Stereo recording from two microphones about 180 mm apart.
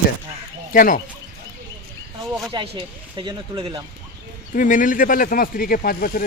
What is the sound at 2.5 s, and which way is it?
Speech, 25° right (ahead or behind).